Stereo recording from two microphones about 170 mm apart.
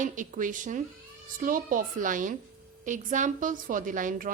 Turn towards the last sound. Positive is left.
turn(degrees=-50)  # may be behind; listen again after turning